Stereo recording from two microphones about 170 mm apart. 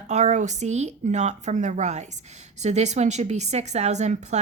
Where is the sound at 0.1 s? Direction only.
45° right (ahead or behind).